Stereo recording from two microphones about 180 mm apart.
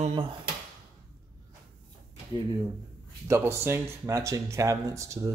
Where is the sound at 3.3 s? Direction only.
15° right (ahead or behind).